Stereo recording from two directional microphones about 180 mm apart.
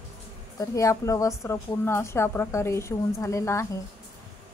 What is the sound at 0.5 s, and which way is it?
A woman's voice, 15° left (ahead or behind).